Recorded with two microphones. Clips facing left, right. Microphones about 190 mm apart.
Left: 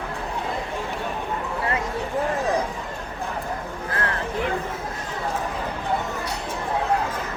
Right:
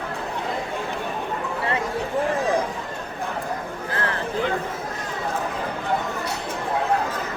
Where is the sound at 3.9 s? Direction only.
30° right (ahead or behind).